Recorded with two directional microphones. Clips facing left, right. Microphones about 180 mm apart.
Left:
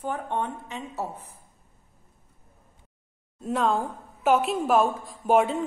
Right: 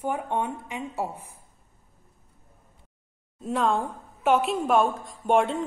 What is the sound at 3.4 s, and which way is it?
A woman's voice, centre (ahead or behind).